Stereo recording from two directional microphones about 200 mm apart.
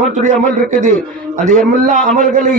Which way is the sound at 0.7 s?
40° right (ahead or behind).